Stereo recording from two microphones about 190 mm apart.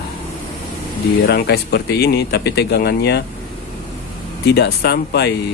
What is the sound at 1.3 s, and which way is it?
Speech, 60° left (ahead or behind).